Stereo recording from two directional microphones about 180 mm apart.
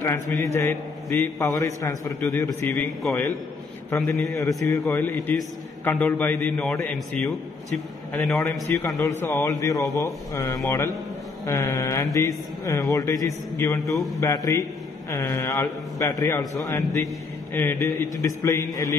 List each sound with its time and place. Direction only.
0.0 s a man's voice: 15° left (ahead or behind)
4.1 s a man's voice: centre (ahead or behind)
4.6 s a man's voice: 15° left (ahead or behind)
13.9 s a man's voice: centre (ahead or behind)
14.2 s a man's voice: 15° left (ahead or behind)